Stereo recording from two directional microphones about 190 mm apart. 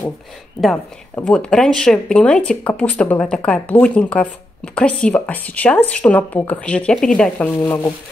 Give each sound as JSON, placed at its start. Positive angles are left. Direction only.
{"t": 1.1, "sound": "speech", "side_deg": 5}